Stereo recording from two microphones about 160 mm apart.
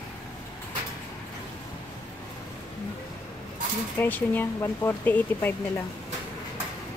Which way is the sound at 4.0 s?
10° left (ahead or behind).